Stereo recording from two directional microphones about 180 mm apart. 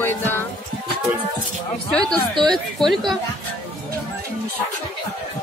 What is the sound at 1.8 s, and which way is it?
Speech, 5° left (ahead or behind).